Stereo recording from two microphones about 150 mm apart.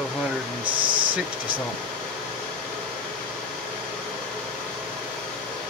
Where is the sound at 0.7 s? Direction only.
35° right (ahead or behind).